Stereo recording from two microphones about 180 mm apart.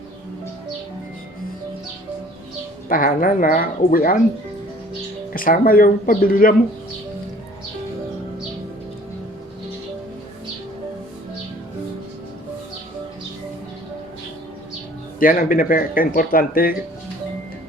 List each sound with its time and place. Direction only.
2.9 s speech: 50° left (ahead or behind)
5.3 s speech: 50° left (ahead or behind)
15.2 s speech: 50° left (ahead or behind)